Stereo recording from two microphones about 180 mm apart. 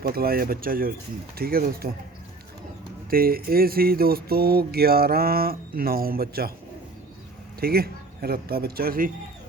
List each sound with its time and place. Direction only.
0.0 s mantra: 55° right (ahead or behind)
3.1 s mantra: 55° right (ahead or behind)
7.6 s mantra: 55° right (ahead or behind)